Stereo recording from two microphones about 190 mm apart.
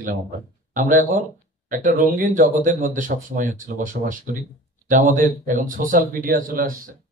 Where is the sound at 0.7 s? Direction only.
45° right (ahead or behind).